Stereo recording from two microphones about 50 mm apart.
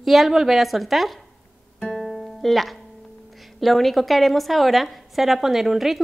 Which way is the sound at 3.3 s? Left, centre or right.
Centre.